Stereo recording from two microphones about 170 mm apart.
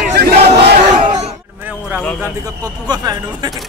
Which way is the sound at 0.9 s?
40° right (ahead or behind).